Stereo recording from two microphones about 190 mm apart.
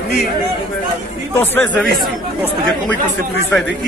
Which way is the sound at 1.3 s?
10° left (ahead or behind).